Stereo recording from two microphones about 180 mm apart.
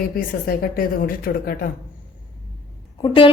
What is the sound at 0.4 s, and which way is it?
A woman's voice, 55° left (ahead or behind).